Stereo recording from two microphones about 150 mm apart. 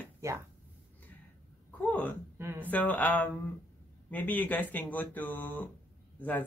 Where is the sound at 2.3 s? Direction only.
15° right (ahead or behind).